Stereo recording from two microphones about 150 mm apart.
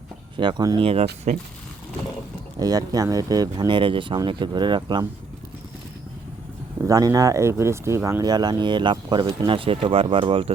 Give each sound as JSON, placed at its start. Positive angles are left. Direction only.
{"t": 0.3, "sound": "speech", "side_deg": -30}
{"t": 0.8, "sound": "speech", "side_deg": -40}
{"t": 2.6, "sound": "speech", "side_deg": -25}
{"t": 6.8, "sound": "speech", "side_deg": -25}